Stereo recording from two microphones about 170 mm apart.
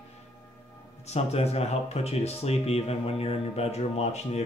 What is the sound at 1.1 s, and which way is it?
Speech, 40° left (ahead or behind).